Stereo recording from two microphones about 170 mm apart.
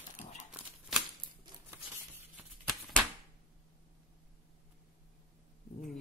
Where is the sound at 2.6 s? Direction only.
Centre (ahead or behind).